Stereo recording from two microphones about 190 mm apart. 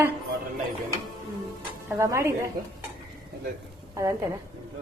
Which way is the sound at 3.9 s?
15° right (ahead or behind).